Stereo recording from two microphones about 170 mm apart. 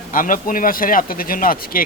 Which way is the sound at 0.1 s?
55° left (ahead or behind).